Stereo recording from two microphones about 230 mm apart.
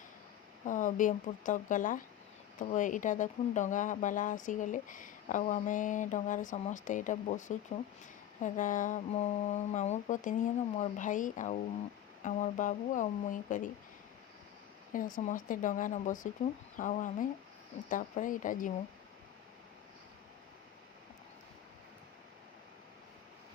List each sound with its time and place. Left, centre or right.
0.6 s speech: left
14.9 s speech: left